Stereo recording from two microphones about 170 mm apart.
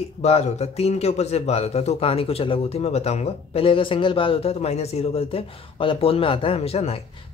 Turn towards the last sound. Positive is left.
turn(degrees=35)  # may be behind; listen again after turning